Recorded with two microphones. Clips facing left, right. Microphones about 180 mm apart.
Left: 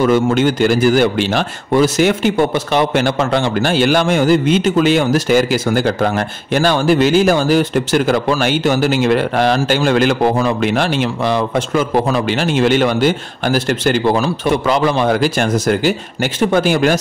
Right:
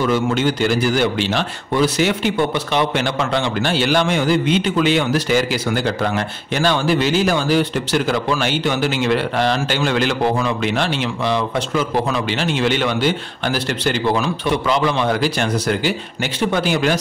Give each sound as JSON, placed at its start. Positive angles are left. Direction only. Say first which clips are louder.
{"t": 0.0, "sound": "a man's voice", "louder": "left 5 dB", "side_deg": 50}